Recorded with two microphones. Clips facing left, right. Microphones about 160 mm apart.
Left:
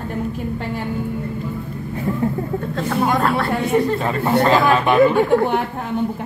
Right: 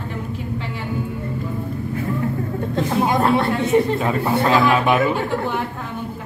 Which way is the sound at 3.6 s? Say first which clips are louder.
Right 1 dB; 5° right (ahead or behind).